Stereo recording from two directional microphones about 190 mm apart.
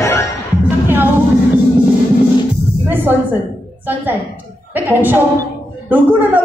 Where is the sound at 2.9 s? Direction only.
10° right (ahead or behind).